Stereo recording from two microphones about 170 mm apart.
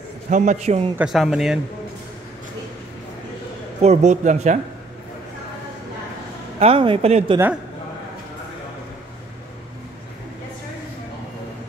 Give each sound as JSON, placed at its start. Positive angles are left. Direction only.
{"t": 0.3, "sound": "speech", "side_deg": -45}
{"t": 0.9, "sound": "speech", "side_deg": 0}
{"t": 3.8, "sound": "a man's voice", "side_deg": -40}
{"t": 6.6, "sound": "speech", "side_deg": -30}